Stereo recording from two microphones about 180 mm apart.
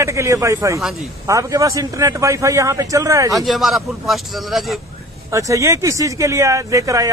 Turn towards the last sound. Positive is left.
turn(degrees=-20)  # may be behind; listen again after turning